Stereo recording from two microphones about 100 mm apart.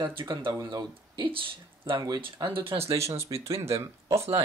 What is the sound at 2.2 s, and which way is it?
Speech, 65° right (ahead or behind).